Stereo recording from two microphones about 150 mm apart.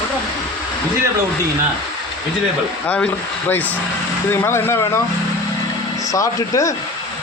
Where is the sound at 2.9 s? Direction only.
10° left (ahead or behind).